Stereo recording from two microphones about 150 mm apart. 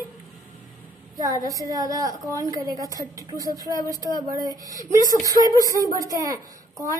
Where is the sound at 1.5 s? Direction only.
25° right (ahead or behind).